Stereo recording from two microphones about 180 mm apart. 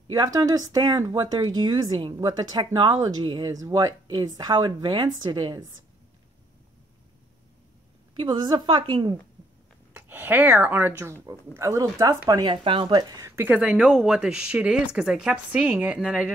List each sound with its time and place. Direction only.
0.1 s speech: 20° right (ahead or behind)
8.2 s speech: 25° right (ahead or behind)
9.9 s speech: 10° right (ahead or behind)